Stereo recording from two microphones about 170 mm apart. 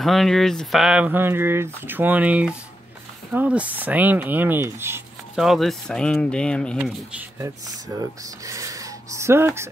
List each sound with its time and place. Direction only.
0.0 s speech: centre (ahead or behind)
5.3 s speech: centre (ahead or behind)
7.1 s speech: 10° right (ahead or behind)
7.4 s speech: 20° right (ahead or behind)